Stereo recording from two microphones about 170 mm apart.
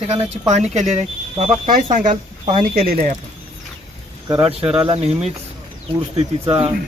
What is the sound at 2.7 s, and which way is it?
Speech, 60° right (ahead or behind).